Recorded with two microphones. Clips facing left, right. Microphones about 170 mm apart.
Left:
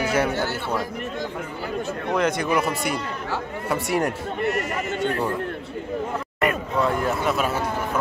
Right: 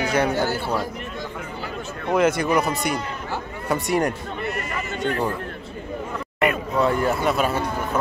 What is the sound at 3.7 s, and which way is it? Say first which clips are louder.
Speech: right 2 dB; 5° left (ahead or behind).